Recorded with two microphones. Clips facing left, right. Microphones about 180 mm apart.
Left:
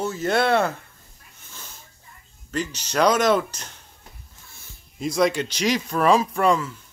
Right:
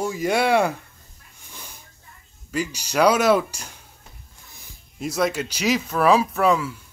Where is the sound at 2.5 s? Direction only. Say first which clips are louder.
Right 1 dB; 10° right (ahead or behind).